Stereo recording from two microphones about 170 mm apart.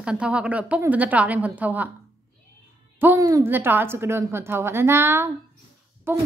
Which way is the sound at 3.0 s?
15° right (ahead or behind).